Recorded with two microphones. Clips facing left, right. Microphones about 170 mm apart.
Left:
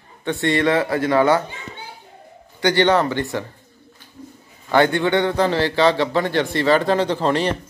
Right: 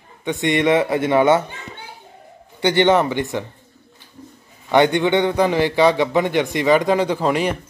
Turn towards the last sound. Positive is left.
turn(degrees=-10)  # may be behind; listen again after turning